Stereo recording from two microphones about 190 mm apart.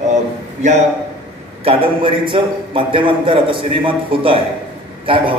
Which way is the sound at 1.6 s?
30° right (ahead or behind).